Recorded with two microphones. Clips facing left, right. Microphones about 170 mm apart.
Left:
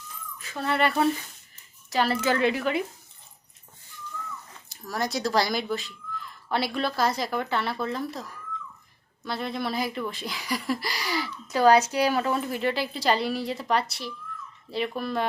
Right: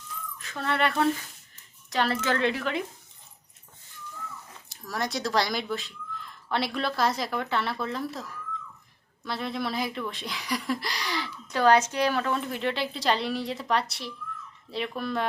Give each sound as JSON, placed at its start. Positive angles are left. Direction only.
{"t": 0.3, "sound": "speech", "side_deg": 5}
{"t": 4.7, "sound": "speech", "side_deg": 0}